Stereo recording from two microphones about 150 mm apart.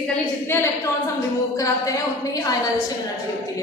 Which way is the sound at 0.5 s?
20° left (ahead or behind).